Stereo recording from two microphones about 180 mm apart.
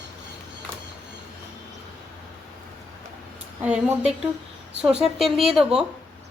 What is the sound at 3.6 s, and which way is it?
A woman's voice, 10° right (ahead or behind).